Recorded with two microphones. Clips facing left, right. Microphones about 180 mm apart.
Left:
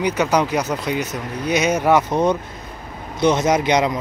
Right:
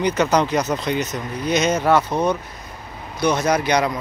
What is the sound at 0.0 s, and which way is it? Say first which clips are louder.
A man's voice: even; 10° left (ahead or behind).